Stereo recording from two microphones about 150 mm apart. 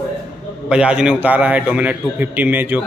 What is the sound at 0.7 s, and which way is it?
A man's voice, 5° right (ahead or behind).